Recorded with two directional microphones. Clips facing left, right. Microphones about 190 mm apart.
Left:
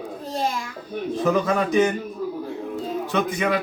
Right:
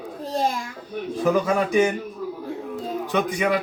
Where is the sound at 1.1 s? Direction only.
10° right (ahead or behind).